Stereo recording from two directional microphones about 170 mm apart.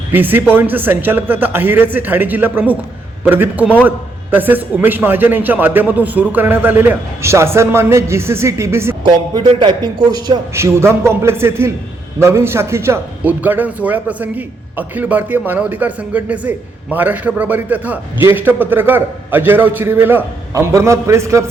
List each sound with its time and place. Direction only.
0.1 s a man's voice: 10° right (ahead or behind)
9.0 s a man's voice: 30° right (ahead or behind)